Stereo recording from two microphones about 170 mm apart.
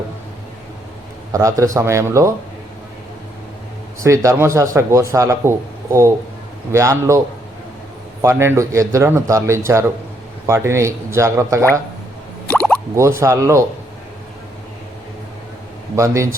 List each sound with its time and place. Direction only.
1.3 s speech: 20° right (ahead or behind)
4.0 s speech: 15° right (ahead or behind)
8.2 s speech: 15° right (ahead or behind)
12.5 s plop: 5° left (ahead or behind)
13.0 s speech: 15° right (ahead or behind)
16.0 s speech: 20° right (ahead or behind)